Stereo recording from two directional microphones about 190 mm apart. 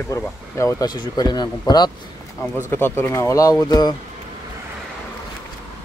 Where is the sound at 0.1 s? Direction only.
15° left (ahead or behind).